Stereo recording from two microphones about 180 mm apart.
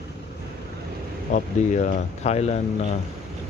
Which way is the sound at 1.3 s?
40° left (ahead or behind).